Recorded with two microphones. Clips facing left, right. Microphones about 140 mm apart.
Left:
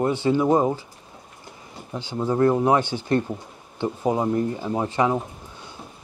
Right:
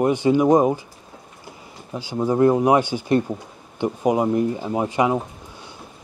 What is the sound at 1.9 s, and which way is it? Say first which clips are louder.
Speech: right 3 dB; 10° right (ahead or behind).